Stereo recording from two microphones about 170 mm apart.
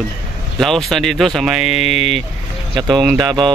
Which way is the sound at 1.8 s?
40° left (ahead or behind).